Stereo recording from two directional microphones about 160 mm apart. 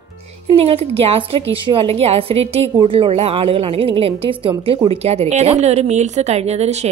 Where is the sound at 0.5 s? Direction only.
35° right (ahead or behind).